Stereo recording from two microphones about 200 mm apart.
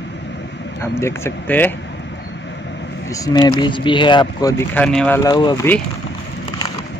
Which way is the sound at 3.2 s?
20° left (ahead or behind).